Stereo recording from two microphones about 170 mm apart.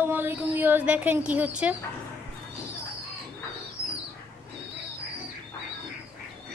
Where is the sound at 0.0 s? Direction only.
10° right (ahead or behind).